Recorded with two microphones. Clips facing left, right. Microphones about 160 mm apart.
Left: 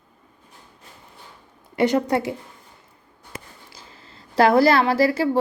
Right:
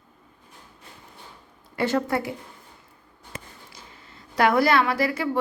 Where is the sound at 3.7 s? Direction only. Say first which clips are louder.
Left 1 dB; 30° left (ahead or behind).